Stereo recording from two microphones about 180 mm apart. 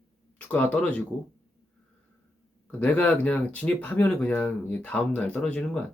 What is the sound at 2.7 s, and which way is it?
Speech, 10° left (ahead or behind).